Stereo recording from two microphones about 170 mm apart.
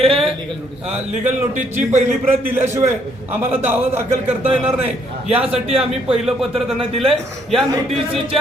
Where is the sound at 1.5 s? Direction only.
45° right (ahead or behind).